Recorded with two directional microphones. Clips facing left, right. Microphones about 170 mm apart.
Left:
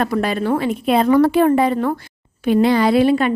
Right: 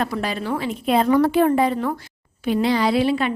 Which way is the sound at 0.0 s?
55° left (ahead or behind).